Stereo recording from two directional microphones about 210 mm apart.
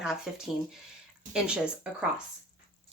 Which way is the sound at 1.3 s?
5° right (ahead or behind).